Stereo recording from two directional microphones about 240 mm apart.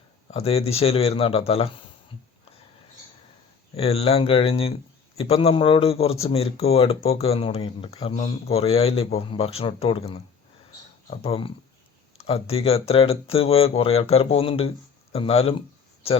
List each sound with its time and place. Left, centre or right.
0.3 s speech: left
3.8 s speech: left